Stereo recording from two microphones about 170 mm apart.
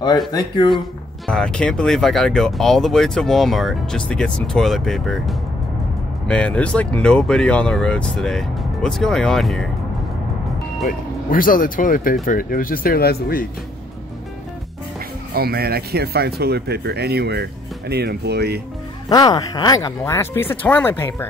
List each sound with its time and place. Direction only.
0.3 s speech: 25° left (ahead or behind)
1.2 s speech: 5° left (ahead or behind)
10.9 s speech: 55° left (ahead or behind)
15.3 s speech: 65° right (ahead or behind)
19.0 s speech: 25° left (ahead or behind)